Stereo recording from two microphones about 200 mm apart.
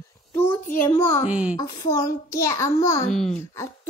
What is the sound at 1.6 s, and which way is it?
A woman's voice, 15° left (ahead or behind).